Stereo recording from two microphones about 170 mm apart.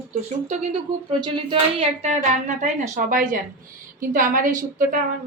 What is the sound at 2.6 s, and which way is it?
A woman's voice, 45° right (ahead or behind).